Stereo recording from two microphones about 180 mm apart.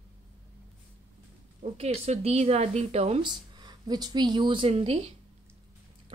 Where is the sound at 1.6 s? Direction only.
35° right (ahead or behind).